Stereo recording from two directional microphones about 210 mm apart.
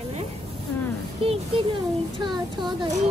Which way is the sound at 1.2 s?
25° right (ahead or behind).